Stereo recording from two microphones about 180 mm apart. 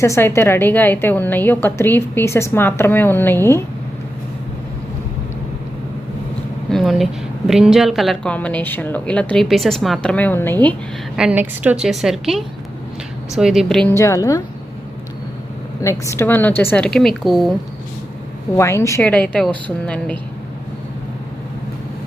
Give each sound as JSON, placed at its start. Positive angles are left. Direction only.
{"t": 0.0, "sound": "a woman's voice", "side_deg": 15}
{"t": 6.7, "sound": "speech", "side_deg": 0}
{"t": 11.2, "sound": "speech", "side_deg": -10}
{"t": 13.9, "sound": "a woman's voice", "side_deg": 15}
{"t": 15.8, "sound": "a woman's voice", "side_deg": 15}
{"t": 18.5, "sound": "a woman's voice", "side_deg": 15}